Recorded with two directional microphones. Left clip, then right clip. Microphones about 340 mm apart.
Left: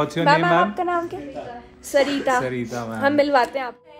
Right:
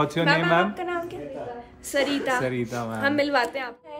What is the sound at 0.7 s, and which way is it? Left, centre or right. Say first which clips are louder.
Speech: left 6 dB; centre.